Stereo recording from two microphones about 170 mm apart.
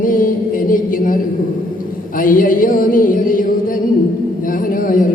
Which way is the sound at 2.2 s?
55° left (ahead or behind).